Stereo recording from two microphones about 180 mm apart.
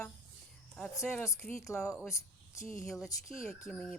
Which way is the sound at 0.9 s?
15° left (ahead or behind).